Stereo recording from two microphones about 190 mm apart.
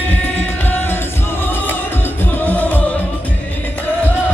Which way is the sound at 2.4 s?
10° left (ahead or behind).